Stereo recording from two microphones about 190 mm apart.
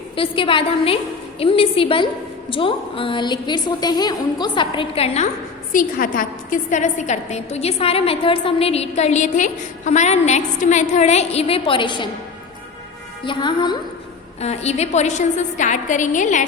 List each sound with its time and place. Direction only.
0.2 s a woman's voice: 25° left (ahead or behind)
5.7 s a woman's voice: 45° left (ahead or behind); by 12.0 s 25° left (ahead or behind)
13.2 s a woman's voice: 25° left (ahead or behind)
14.4 s a woman's voice: 35° left (ahead or behind)